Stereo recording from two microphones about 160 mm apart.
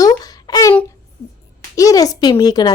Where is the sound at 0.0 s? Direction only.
25° left (ahead or behind).